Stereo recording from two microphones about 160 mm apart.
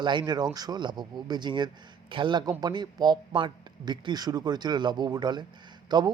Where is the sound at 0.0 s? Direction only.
30° right (ahead or behind).